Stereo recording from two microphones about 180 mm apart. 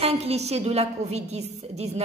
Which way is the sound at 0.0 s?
35° right (ahead or behind).